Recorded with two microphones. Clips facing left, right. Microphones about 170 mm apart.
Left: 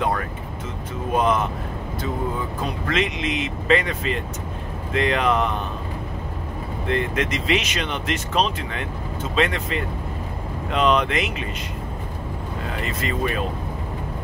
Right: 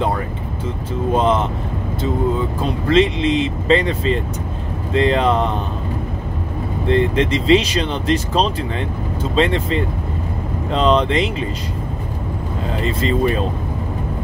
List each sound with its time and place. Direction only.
1.1 s speech: 25° right (ahead or behind)
2.6 s speech: 30° right (ahead or behind)
6.9 s speech: 30° right (ahead or behind)
12.8 s speech: 30° right (ahead or behind)